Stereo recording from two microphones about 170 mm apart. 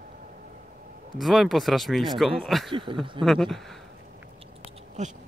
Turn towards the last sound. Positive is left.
turn(degrees=-45)  # may be behind; listen again after turning